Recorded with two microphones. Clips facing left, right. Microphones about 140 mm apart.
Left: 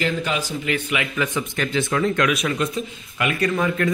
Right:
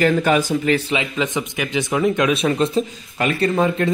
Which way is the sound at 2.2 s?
30° right (ahead or behind).